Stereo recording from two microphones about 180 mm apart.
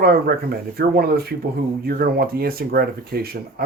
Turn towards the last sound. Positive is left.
turn(degrees=-55)  # may be behind; listen again after turning